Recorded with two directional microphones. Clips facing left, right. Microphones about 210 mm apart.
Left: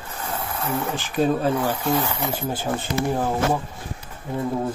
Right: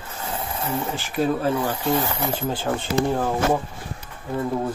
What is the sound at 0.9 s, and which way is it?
Speech, 20° left (ahead or behind).